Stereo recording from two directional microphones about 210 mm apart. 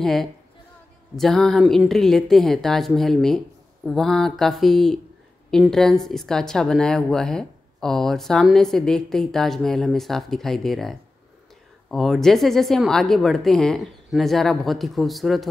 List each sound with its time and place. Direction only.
0.0 s speech: centre (ahead or behind)